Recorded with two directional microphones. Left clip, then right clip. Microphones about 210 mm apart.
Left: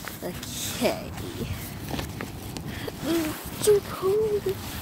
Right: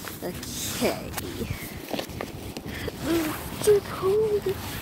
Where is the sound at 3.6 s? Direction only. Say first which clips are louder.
Even; 20° left (ahead or behind).